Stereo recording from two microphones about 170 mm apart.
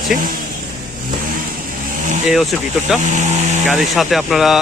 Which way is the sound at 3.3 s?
45° right (ahead or behind).